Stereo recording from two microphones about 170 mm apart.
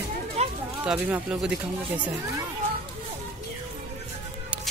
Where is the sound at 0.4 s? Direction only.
40° right (ahead or behind).